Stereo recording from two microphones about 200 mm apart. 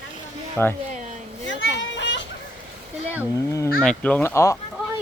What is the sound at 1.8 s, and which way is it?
Children playing, 65° left (ahead or behind).